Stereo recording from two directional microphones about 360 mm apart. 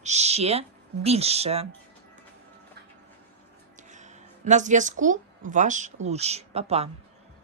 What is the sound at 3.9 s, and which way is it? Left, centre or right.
A woman's voice, centre.